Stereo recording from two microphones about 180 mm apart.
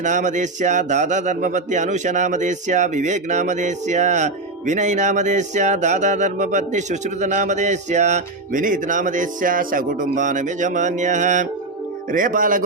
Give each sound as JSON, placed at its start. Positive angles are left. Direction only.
{"t": 0.0, "sound": "speech", "side_deg": -45}